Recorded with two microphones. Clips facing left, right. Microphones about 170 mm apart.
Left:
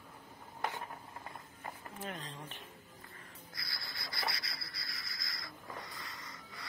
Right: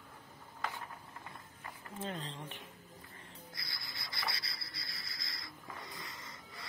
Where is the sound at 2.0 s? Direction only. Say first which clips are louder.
Right 4 dB; 30° right (ahead or behind).